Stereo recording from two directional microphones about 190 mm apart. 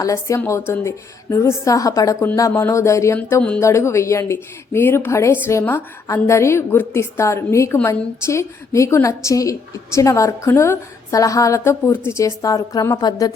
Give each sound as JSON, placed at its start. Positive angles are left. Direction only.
{"t": 0.0, "sound": "a woman's voice", "side_deg": 15}